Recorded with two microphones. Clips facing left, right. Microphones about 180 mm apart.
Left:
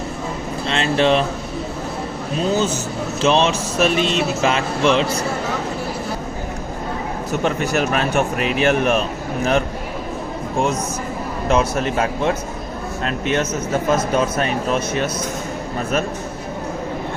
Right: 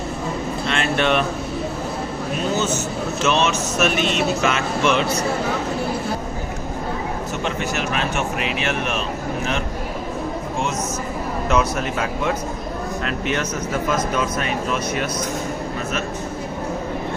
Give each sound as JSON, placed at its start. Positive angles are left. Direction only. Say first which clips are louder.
{"t": 0.7, "sound": "speech", "louder": "left 4 dB", "side_deg": 30}
{"t": 3.2, "sound": "speech", "louder": "left 4 dB", "side_deg": 30}
{"t": 7.4, "sound": "speech", "louder": "left 6 dB", "side_deg": 40}
{"t": 11.4, "sound": "speech", "louder": "left 3 dB", "side_deg": 30}
{"t": 13.9, "sound": "speech", "louder": "left 5 dB", "side_deg": 30}